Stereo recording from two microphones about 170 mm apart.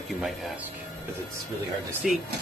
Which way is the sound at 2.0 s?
Centre (ahead or behind).